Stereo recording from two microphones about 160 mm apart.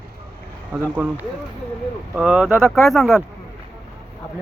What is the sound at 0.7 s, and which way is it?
Speech, 15° right (ahead or behind).